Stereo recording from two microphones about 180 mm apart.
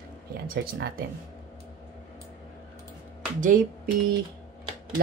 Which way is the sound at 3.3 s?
45° right (ahead or behind).